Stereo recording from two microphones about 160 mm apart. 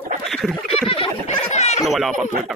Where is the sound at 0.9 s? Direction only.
40° left (ahead or behind).